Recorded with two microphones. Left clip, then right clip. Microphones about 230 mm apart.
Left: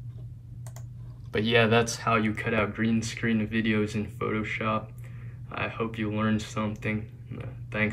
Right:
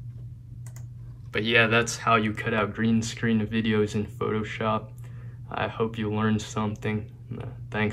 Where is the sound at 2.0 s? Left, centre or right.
Centre.